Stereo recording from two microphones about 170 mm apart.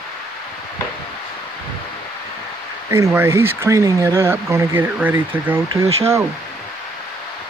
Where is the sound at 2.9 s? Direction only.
15° right (ahead or behind).